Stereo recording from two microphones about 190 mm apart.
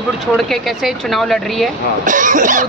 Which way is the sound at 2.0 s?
45° right (ahead or behind).